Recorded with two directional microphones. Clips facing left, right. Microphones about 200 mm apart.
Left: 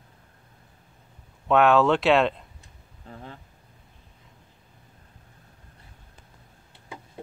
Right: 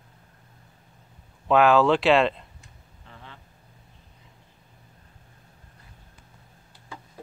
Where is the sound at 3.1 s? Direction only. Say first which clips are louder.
Left 6 dB; 40° left (ahead or behind).